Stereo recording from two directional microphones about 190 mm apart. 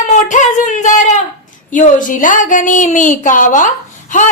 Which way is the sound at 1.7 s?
45° left (ahead or behind).